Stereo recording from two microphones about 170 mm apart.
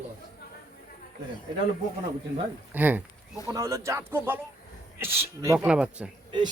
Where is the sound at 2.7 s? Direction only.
10° right (ahead or behind).